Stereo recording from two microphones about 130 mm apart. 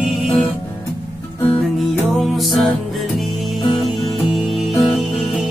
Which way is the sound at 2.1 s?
Centre (ahead or behind).